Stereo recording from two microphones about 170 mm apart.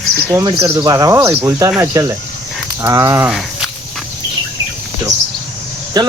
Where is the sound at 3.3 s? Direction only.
Centre (ahead or behind).